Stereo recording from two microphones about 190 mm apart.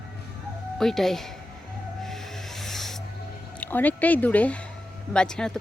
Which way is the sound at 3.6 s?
10° left (ahead or behind).